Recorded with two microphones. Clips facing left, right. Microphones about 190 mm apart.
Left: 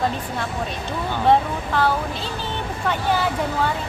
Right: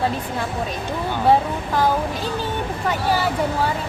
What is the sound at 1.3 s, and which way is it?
Speech, 10° right (ahead or behind).